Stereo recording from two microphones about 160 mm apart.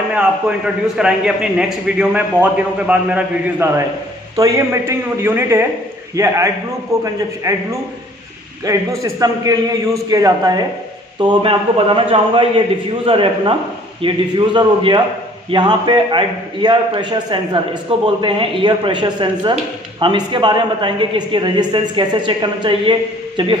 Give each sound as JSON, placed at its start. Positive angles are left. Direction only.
{"t": 0.1, "sound": "a man's voice", "side_deg": -5}
{"t": 8.6, "sound": "a man's voice", "side_deg": -20}